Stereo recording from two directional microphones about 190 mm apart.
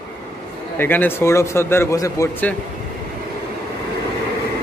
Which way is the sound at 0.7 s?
10° left (ahead or behind).